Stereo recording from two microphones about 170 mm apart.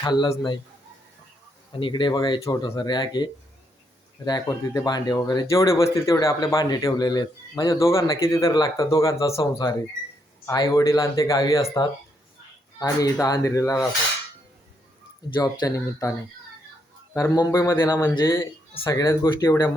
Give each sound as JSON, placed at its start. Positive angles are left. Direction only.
{"t": 0.0, "sound": "speech", "side_deg": 25}
{"t": 1.8, "sound": "speech", "side_deg": 25}
{"t": 4.3, "sound": "a man's voice", "side_deg": 20}
{"t": 15.4, "sound": "speech", "side_deg": 20}
{"t": 17.2, "sound": "speech", "side_deg": 20}